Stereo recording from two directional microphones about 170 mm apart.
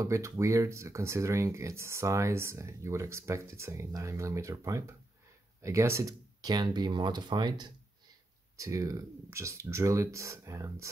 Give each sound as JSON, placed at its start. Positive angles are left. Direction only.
{"t": 0.0, "sound": "speech", "side_deg": -20}